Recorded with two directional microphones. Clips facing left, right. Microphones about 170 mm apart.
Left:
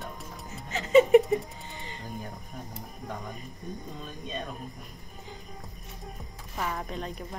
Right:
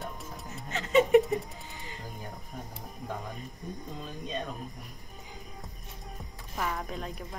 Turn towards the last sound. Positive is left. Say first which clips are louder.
# left 1 dB
turn(degrees=-5)  # may be behind; listen again after turning